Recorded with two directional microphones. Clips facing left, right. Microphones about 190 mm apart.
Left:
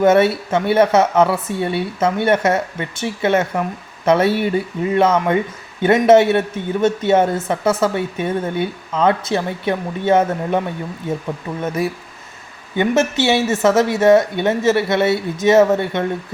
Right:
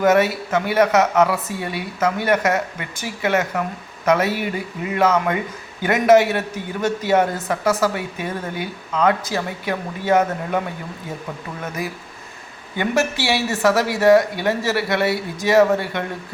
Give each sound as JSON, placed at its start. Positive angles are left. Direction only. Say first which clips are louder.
{"t": 0.0, "sound": "speech", "louder": "left 3 dB", "side_deg": 30}
{"t": 11.6, "sound": "speech", "louder": "left 7 dB", "side_deg": 25}